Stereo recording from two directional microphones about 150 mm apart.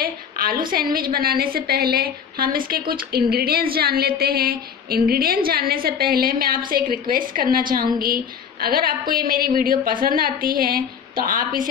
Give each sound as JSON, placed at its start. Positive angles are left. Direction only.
{"t": 0.0, "sound": "a woman's voice", "side_deg": -75}
{"t": 2.9, "sound": "a woman's voice", "side_deg": -85}